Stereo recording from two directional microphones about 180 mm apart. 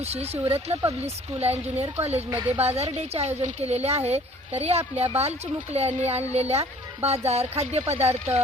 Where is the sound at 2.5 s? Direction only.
35° right (ahead or behind).